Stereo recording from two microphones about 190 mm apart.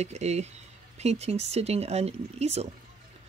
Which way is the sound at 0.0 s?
35° right (ahead or behind).